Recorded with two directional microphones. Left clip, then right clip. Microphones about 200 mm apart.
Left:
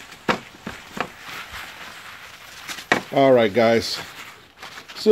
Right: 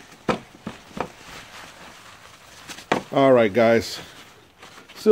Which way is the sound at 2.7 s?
15° right (ahead or behind).